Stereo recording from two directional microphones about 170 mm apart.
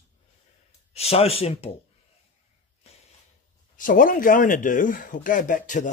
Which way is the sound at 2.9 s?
40° left (ahead or behind).